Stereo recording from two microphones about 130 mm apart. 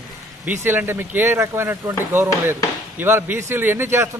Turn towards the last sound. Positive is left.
turn(degrees=-20)  # may be behind; listen again after turning